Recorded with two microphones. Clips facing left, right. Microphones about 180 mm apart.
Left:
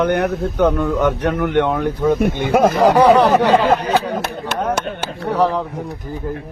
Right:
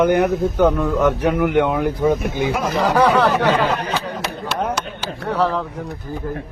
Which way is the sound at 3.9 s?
55° left (ahead or behind).